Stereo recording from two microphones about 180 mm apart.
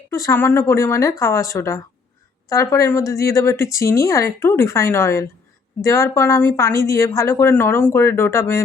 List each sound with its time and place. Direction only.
0.1 s speech: 15° left (ahead or behind)